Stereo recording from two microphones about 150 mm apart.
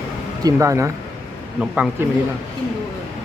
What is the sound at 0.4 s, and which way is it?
Speech, 20° right (ahead or behind).